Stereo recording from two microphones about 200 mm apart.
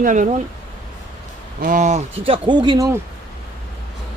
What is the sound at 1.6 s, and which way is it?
Speech, 40° right (ahead or behind).